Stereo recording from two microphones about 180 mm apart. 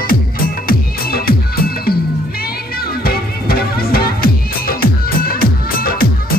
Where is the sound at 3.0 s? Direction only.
60° left (ahead or behind).